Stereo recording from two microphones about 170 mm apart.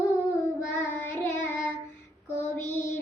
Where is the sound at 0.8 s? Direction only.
10° left (ahead or behind).